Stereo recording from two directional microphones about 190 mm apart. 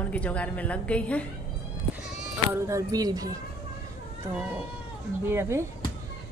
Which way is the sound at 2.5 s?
15° right (ahead or behind).